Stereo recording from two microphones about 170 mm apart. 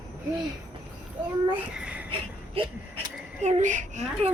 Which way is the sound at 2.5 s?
30° right (ahead or behind).